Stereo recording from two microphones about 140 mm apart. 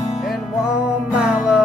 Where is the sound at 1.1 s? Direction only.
10° right (ahead or behind).